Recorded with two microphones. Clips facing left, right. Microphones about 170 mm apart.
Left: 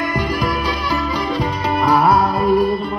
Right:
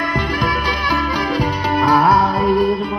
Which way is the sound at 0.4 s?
Centre (ahead or behind).